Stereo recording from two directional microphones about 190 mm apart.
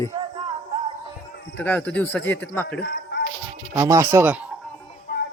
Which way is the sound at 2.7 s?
60° left (ahead or behind).